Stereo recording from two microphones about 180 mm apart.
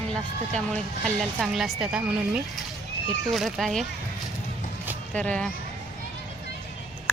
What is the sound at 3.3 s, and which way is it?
Speech, centre (ahead or behind).